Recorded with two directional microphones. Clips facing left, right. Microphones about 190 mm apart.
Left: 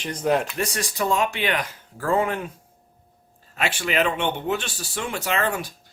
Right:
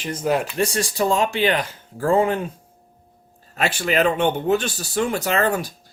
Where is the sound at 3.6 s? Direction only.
40° right (ahead or behind).